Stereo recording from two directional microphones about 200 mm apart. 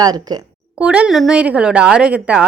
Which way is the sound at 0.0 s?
20° right (ahead or behind).